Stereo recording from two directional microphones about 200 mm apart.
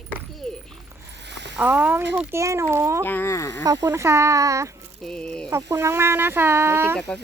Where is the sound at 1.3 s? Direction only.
60° right (ahead or behind).